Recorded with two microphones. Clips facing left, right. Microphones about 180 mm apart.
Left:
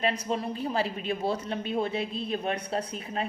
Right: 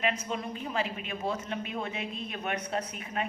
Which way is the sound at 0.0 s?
35° left (ahead or behind).